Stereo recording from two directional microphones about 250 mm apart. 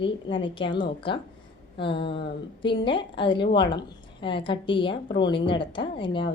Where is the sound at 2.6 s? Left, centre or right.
Centre.